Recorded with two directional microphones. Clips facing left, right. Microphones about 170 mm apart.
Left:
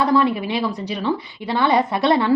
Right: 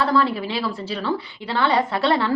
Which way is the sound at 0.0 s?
15° left (ahead or behind).